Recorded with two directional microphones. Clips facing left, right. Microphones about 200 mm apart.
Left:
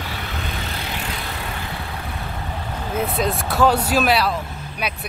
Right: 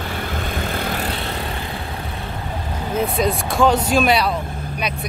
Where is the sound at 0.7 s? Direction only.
50° right (ahead or behind).